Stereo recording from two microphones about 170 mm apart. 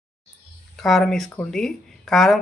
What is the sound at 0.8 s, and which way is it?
Speech, centre (ahead or behind).